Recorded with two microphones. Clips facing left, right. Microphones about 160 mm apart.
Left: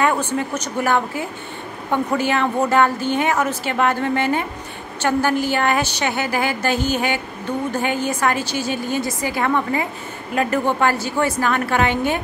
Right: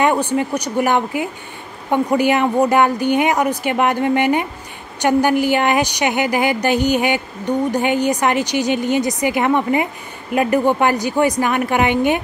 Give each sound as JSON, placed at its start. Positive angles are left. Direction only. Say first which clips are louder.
{"t": 0.0, "sound": "a woman's voice", "louder": "right 3 dB", "side_deg": -15}